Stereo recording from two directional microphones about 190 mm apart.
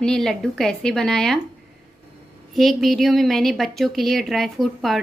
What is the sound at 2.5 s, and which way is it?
A woman's voice, centre (ahead or behind).